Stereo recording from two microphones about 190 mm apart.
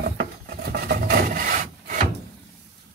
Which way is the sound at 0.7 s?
55° right (ahead or behind).